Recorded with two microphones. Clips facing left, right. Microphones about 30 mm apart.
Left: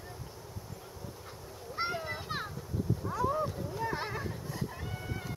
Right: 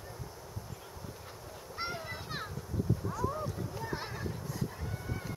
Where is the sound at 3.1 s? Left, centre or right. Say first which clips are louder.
Left 4 dB; centre.